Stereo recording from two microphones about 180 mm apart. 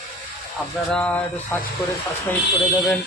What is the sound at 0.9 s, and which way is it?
Speech, 5° left (ahead or behind).